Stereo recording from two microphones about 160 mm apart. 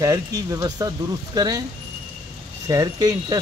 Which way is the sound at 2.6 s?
25° right (ahead or behind).